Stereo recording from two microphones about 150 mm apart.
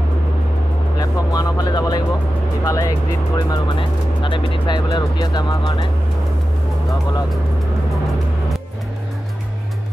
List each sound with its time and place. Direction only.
0.9 s speech: 25° left (ahead or behind)